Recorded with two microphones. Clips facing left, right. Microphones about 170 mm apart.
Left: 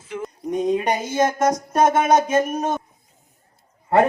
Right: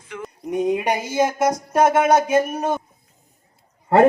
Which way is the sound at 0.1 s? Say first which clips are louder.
Left 3 dB; 30° left (ahead or behind).